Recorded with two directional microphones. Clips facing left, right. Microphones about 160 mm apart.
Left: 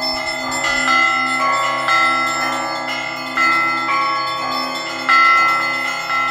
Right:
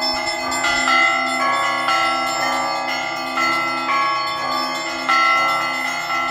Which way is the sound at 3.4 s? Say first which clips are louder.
Left 4 dB; 15° right (ahead or behind).